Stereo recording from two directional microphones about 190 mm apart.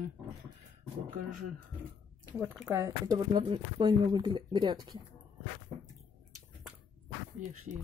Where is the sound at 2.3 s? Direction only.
10° right (ahead or behind); by 5.0 s 25° right (ahead or behind).